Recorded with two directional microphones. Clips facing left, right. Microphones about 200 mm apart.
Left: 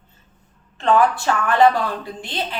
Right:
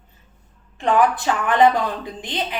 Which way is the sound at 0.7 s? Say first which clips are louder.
Left 1 dB; 15° right (ahead or behind).